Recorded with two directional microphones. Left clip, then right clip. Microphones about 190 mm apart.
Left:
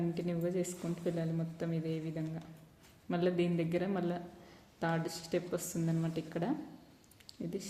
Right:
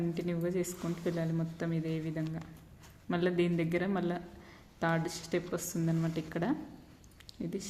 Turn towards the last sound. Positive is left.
turn(degrees=-20)  # may be behind; listen again after turning